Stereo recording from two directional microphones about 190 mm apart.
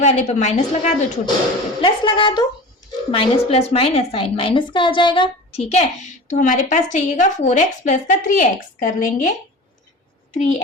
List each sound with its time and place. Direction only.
0.0 s a woman's voice: 40° left (ahead or behind)
10.3 s a woman's voice: 35° left (ahead or behind)